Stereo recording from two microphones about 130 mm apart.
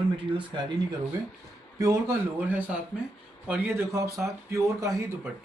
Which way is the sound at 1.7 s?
25° right (ahead or behind).